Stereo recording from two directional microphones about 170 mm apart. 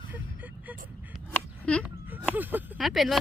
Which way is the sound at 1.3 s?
5° left (ahead or behind).